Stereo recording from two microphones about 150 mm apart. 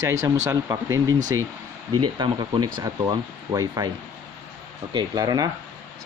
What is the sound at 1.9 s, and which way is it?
Speech, 30° right (ahead or behind).